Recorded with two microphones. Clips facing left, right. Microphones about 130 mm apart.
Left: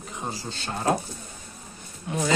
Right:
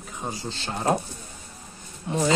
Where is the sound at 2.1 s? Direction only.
30° right (ahead or behind).